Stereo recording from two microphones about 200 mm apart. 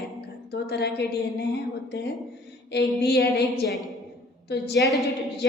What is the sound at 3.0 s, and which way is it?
Speech, 55° left (ahead or behind).